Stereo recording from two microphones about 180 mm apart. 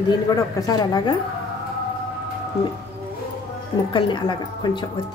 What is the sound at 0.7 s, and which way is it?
Speech, 25° left (ahead or behind).